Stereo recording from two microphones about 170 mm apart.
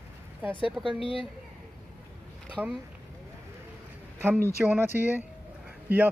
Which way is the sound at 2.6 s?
10° right (ahead or behind).